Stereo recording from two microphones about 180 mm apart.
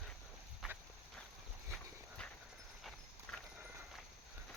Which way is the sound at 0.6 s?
Centre (ahead or behind).